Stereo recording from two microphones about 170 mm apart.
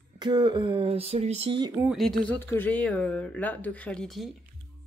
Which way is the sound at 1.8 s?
Centre (ahead or behind).